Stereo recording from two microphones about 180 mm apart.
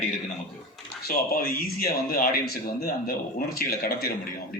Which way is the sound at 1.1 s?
55° left (ahead or behind).